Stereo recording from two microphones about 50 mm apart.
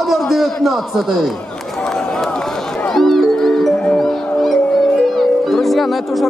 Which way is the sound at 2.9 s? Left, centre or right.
Centre.